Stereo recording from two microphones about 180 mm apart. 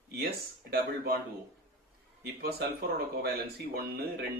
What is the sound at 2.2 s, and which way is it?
Speech, 60° right (ahead or behind).